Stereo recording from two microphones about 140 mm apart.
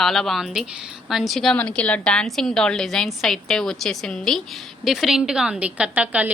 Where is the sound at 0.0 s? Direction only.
Centre (ahead or behind).